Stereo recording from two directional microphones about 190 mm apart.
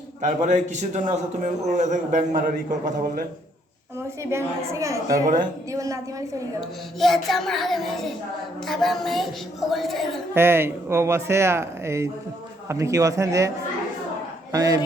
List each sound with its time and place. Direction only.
0.2 s a man's voice: 40° right (ahead or behind)
4.2 s speech: 15° right (ahead or behind)
6.6 s a woman's voice: centre (ahead or behind)
10.3 s speech: 10° right (ahead or behind)
14.5 s speech: 20° right (ahead or behind)